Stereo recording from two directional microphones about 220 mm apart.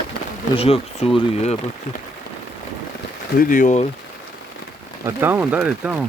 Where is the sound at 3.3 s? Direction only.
40° left (ahead or behind).